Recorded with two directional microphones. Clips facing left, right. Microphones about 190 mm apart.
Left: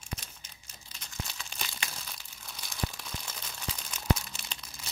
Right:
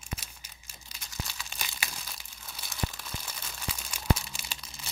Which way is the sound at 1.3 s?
10° right (ahead or behind).